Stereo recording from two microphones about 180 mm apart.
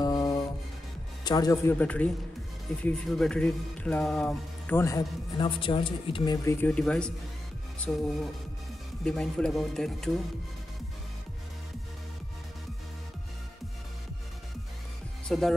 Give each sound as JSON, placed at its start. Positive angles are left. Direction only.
{"t": 0.0, "sound": "music", "side_deg": 20}
{"t": 1.2, "sound": "speech", "side_deg": 20}
{"t": 9.0, "sound": "speech", "side_deg": 5}
{"t": 15.2, "sound": "speech", "side_deg": 0}